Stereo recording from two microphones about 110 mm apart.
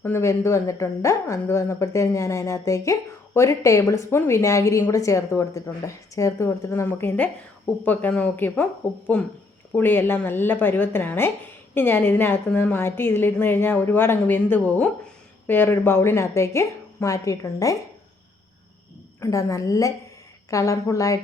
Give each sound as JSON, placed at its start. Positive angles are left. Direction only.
{"t": 0.0, "sound": "speech", "side_deg": 25}
{"t": 19.2, "sound": "speech", "side_deg": 30}